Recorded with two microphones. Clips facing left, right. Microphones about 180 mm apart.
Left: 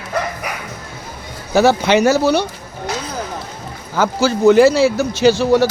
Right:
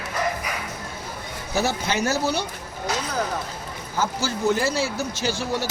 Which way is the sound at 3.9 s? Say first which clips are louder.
Left 9 dB; 85° left.